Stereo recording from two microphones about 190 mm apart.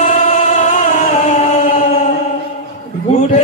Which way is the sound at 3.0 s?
40° left (ahead or behind).